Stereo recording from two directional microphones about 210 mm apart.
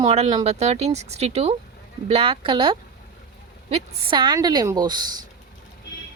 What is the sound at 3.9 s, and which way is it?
Speech, 25° right (ahead or behind).